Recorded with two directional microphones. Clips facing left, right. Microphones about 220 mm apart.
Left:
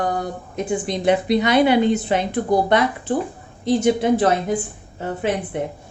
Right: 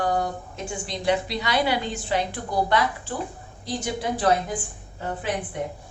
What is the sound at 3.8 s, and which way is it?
Speech, 25° left (ahead or behind).